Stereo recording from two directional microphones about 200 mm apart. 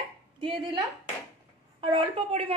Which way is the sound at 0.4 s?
25° right (ahead or behind).